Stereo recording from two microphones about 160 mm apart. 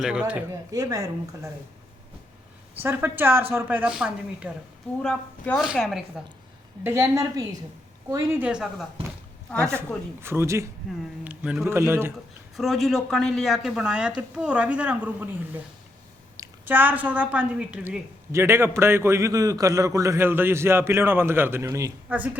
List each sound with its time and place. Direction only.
0.0 s speech: 5° right (ahead or behind)
0.7 s speech: 20° right (ahead or behind)
2.8 s a woman's voice: 15° right (ahead or behind)
6.8 s a woman's voice: 15° right (ahead or behind)
9.6 s a woman's voice: 15° right (ahead or behind)
12.5 s a woman's voice: centre (ahead or behind)
16.4 s a woman's voice: 10° right (ahead or behind)